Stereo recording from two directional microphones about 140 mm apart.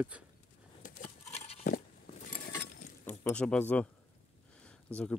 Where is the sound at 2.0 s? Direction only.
65° left (ahead or behind).